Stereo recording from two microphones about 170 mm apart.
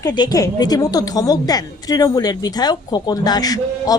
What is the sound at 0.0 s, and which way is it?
A woman's voice, 25° left (ahead or behind).